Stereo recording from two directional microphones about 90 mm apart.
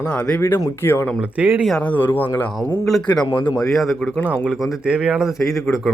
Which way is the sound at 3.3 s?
60° left (ahead or behind).